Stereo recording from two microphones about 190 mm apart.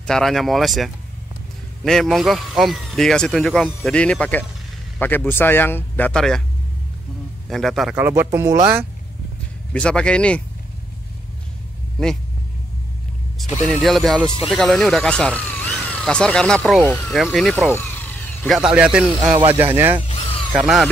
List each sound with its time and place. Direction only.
0.0 s speech: 5° left (ahead or behind)
7.4 s a man's voice: centre (ahead or behind)
7.9 s speech: 10° right (ahead or behind)
9.7 s speech: 5° left (ahead or behind)
13.4 s speech: 5° left (ahead or behind)
17.7 s a sound: 10° left (ahead or behind)
18.6 s speech: 5° right (ahead or behind)
20.1 s a sound: 30° left (ahead or behind)
20.5 s speech: centre (ahead or behind)